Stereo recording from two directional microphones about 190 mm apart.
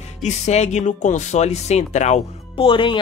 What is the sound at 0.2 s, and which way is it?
Speech, 35° left (ahead or behind).